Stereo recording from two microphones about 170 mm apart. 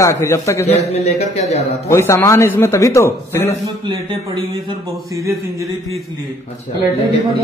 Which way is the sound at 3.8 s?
30° right (ahead or behind).